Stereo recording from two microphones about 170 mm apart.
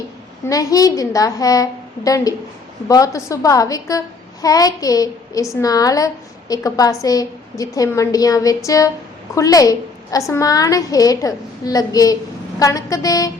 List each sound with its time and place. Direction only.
0.4 s a woman's voice: 20° left (ahead or behind)